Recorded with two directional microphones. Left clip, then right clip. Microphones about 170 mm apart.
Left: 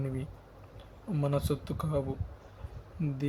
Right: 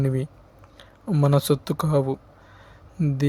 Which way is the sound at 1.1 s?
55° right (ahead or behind).